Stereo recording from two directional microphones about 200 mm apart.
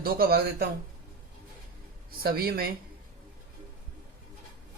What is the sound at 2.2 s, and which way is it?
Speech, 50° right (ahead or behind).